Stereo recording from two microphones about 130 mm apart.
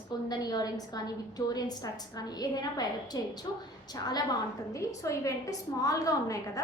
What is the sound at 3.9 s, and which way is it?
A woman's voice, 30° left (ahead or behind).